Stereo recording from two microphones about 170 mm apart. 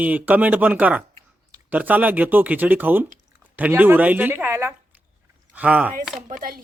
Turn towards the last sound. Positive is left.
turn(degrees=-55)  # may be behind; listen again after turning